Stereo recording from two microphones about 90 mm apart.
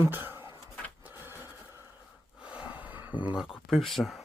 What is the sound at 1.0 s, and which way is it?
Printer, 25° right (ahead or behind).